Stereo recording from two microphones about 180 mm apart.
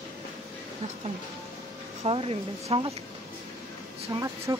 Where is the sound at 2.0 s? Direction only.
30° right (ahead or behind).